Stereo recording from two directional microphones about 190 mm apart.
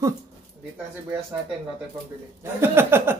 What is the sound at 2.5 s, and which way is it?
Speech, 10° right (ahead or behind).